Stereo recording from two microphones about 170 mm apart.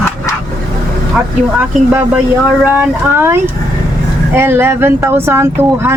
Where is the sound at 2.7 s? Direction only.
15° right (ahead or behind).